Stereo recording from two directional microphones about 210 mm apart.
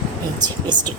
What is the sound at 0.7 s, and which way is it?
Speech, 20° right (ahead or behind).